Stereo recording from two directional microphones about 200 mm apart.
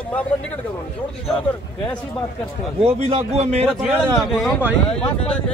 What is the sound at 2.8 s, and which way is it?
Speech, 30° right (ahead or behind).